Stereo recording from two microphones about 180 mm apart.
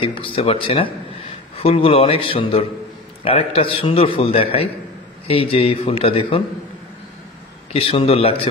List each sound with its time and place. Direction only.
0.0 s a man's voice: 30° left (ahead or behind)
7.7 s a man's voice: 30° left (ahead or behind)